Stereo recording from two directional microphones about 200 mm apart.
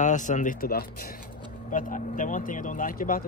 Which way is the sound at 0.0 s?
40° left (ahead or behind).